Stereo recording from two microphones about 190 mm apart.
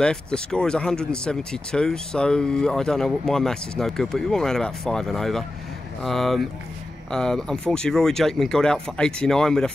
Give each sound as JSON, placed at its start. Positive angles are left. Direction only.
{"t": 0.0, "sound": "speech", "side_deg": 5}